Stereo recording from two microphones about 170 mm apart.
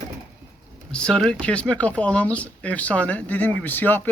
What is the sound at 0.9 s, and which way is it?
Speech, 5° left (ahead or behind).